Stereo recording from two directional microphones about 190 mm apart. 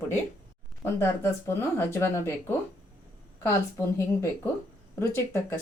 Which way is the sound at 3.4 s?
15° left (ahead or behind).